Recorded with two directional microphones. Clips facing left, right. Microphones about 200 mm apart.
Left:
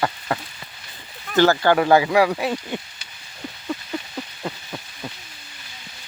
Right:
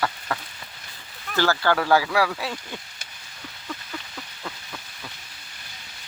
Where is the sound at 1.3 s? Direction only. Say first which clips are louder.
Left 6 dB; 20° left (ahead or behind).